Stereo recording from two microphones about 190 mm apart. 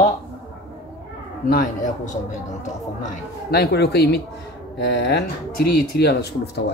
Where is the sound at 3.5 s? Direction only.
60° left (ahead or behind).